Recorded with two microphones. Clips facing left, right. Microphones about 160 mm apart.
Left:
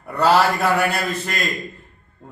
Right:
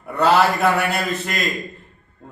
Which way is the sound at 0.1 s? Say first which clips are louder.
Even; centre (ahead or behind).